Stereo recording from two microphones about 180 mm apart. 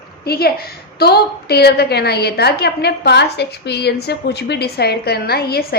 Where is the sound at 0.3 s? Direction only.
60° left (ahead or behind).